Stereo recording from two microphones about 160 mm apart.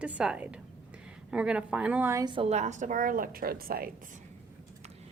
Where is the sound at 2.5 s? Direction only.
45° right (ahead or behind); by 3.9 s 70° right (ahead or behind).